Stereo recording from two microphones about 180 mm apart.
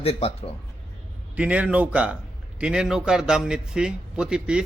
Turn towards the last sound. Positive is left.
turn(degrees=-5)  # may be behind; listen again after turning